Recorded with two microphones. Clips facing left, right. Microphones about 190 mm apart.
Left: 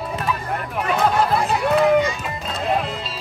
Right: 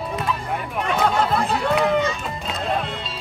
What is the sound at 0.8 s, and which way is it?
Chatter, 5° left (ahead or behind).